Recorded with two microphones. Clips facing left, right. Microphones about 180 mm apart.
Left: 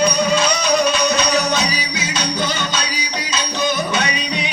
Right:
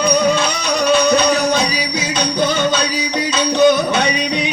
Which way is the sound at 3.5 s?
60° right (ahead or behind).